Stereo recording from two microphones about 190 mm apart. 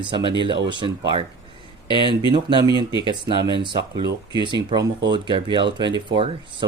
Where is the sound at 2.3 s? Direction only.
25° right (ahead or behind).